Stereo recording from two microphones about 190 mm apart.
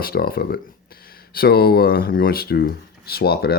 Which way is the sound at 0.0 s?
55° left (ahead or behind).